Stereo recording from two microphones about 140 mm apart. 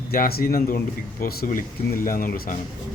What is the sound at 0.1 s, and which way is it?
A man's voice, 90° left.